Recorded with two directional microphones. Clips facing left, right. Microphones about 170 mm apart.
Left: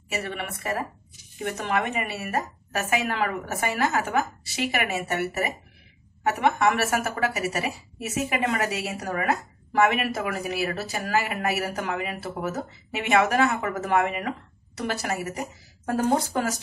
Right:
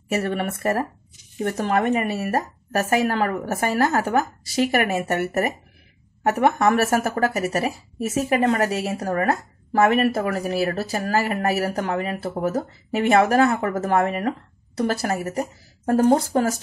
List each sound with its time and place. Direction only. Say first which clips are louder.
0.2 s speech: right 8 dB; 45° right (ahead or behind); by 16.5 s 30° right (ahead or behind)